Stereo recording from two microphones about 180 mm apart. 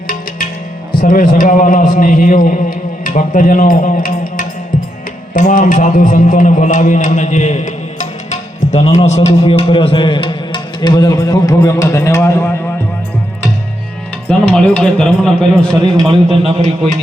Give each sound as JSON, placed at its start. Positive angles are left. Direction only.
{"t": 1.0, "sound": "a man's voice", "side_deg": 50}
{"t": 14.3, "sound": "a man's voice", "side_deg": 5}
{"t": 15.8, "sound": "a man's voice", "side_deg": -25}